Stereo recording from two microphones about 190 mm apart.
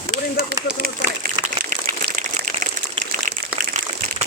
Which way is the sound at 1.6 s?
45° right (ahead or behind).